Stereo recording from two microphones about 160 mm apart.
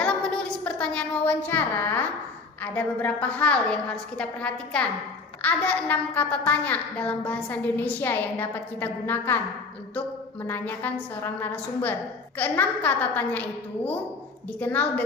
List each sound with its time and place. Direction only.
0.0 s a sound: 5° left (ahead or behind)
2.7 s a child's voice: 10° left (ahead or behind)
10.4 s a child's voice: 10° left (ahead or behind)